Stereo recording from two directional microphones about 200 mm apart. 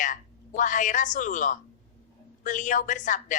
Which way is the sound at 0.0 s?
40° left (ahead or behind).